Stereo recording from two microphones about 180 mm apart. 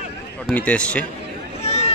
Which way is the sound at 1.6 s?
35° left (ahead or behind).